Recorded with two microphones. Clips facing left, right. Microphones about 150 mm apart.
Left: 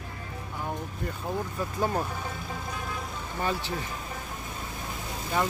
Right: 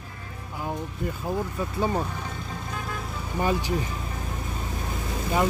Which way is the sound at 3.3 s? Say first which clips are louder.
Right 5 dB; 10° right (ahead or behind).